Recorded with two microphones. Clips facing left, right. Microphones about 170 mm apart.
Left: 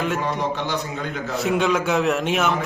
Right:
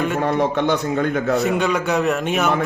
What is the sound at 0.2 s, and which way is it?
A man's voice, 55° right (ahead or behind).